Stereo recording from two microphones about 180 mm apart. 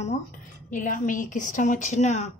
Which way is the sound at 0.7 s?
45° left (ahead or behind).